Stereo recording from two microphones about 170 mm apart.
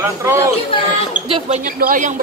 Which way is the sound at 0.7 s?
30° left (ahead or behind).